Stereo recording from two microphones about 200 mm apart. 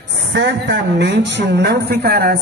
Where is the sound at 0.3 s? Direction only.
60° right (ahead or behind).